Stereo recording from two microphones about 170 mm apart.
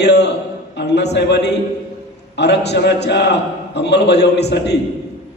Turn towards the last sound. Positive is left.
turn(degrees=80)